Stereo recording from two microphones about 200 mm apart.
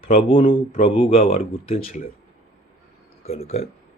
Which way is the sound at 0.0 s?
30° left (ahead or behind).